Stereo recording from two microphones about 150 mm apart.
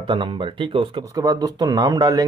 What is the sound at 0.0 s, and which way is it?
Speech, 35° right (ahead or behind).